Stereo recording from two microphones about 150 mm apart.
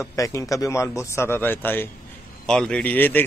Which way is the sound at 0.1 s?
20° left (ahead or behind).